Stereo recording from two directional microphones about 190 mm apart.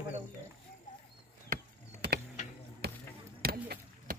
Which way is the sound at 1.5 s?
50° right (ahead or behind).